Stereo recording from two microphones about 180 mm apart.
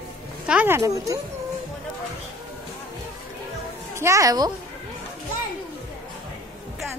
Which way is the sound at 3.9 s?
15° right (ahead or behind).